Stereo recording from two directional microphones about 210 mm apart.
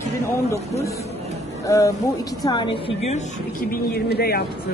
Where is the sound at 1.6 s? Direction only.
15° left (ahead or behind).